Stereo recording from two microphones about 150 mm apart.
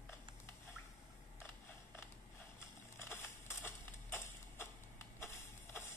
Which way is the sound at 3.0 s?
15° left (ahead or behind).